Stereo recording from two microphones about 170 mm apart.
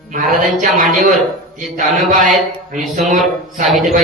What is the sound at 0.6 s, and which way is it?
Speech, 50° right (ahead or behind).